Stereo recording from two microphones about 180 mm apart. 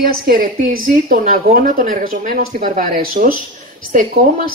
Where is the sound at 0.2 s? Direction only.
50° right (ahead or behind).